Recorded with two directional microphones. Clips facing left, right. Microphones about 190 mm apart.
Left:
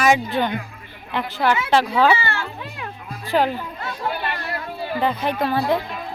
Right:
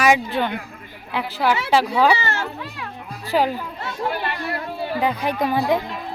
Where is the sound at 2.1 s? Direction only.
40° right (ahead or behind).